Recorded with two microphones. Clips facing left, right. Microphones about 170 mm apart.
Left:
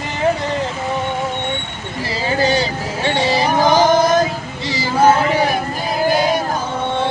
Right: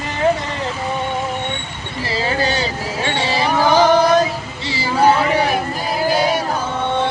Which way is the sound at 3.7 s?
40° left (ahead or behind).